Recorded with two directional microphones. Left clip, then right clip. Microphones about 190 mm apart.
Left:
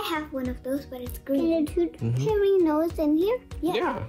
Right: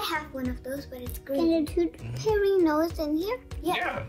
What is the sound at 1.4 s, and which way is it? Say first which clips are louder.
Speech: even; 20° left (ahead or behind).